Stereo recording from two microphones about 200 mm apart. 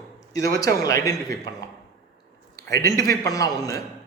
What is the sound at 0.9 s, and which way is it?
Speech, 15° left (ahead or behind).